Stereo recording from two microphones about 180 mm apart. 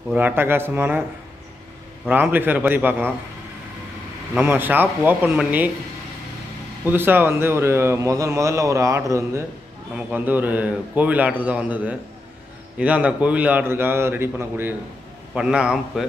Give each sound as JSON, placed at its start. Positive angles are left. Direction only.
{"t": 0.1, "sound": "a man's voice", "side_deg": -10}
{"t": 2.0, "sound": "a man's voice", "side_deg": -10}
{"t": 4.3, "sound": "a man's voice", "side_deg": -10}
{"t": 6.9, "sound": "a man's voice", "side_deg": -10}